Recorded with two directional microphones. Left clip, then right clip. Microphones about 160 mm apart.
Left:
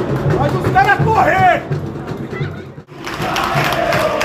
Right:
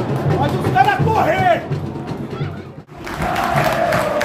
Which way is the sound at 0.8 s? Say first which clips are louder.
Left 3 dB; 30° right (ahead or behind).